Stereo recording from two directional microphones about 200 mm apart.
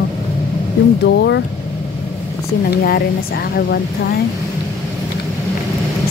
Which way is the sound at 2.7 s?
50° left (ahead or behind).